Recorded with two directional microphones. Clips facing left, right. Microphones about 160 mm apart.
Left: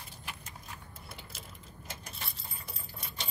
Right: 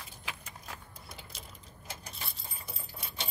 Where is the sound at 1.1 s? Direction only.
5° left (ahead or behind).